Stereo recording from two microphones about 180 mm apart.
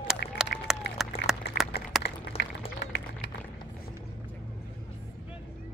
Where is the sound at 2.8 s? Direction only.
70° left (ahead or behind).